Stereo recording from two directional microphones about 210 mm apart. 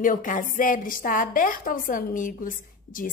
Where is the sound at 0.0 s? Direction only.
40° left (ahead or behind).